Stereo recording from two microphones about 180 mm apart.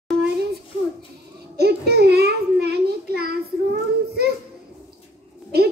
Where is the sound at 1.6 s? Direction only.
65° right (ahead or behind).